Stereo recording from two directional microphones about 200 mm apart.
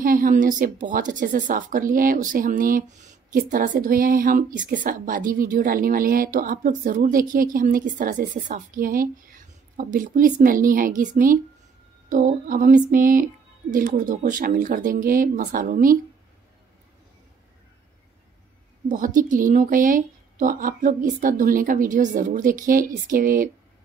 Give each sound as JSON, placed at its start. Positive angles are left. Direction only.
{"t": 0.0, "sound": "a woman's voice", "side_deg": -45}
{"t": 18.9, "sound": "speech", "side_deg": -40}